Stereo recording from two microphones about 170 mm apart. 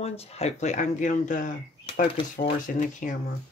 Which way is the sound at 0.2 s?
40° left (ahead or behind).